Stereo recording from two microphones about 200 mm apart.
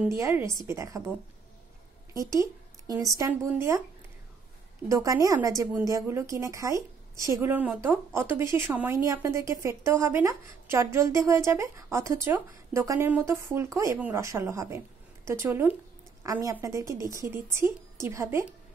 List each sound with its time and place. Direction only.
0.0 s a woman's voice: 15° right (ahead or behind)
2.1 s a woman's voice: 15° right (ahead or behind)
4.8 s a woman's voice: 15° right (ahead or behind)